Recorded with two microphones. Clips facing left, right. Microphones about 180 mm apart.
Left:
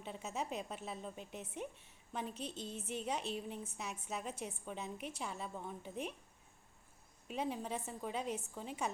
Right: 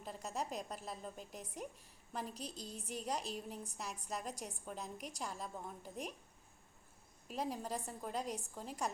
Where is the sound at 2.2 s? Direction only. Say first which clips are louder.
Left 3 dB; 35° right (ahead or behind).